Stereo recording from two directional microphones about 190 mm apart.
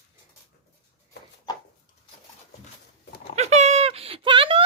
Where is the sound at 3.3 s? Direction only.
35° right (ahead or behind).